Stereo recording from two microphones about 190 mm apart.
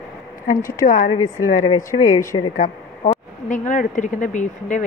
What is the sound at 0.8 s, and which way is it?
A woman's voice, 40° left (ahead or behind).